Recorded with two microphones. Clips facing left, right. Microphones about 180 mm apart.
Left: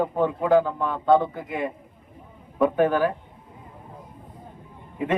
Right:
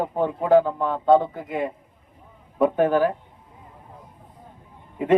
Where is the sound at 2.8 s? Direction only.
20° right (ahead or behind).